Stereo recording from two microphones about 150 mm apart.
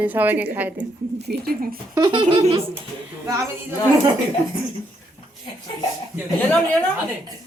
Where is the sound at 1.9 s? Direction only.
30° right (ahead or behind).